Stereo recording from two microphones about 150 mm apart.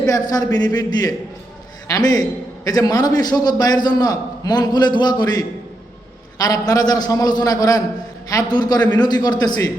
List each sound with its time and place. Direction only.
0.0 s a man's voice: 25° left (ahead or behind)